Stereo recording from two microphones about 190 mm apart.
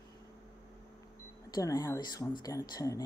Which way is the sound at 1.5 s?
20° left (ahead or behind).